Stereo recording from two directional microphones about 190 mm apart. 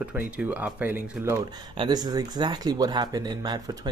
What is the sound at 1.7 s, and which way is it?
Speech, 25° right (ahead or behind).